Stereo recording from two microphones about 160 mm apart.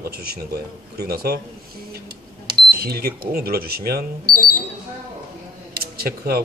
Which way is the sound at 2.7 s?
75° right (ahead or behind).